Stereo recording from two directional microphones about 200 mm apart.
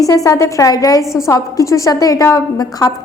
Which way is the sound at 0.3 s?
15° left (ahead or behind).